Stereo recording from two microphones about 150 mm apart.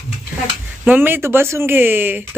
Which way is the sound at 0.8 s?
10° right (ahead or behind).